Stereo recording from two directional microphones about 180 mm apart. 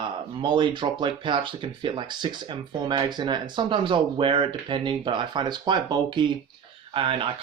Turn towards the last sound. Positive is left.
turn(degrees=-30)  # may be behind; listen again after turning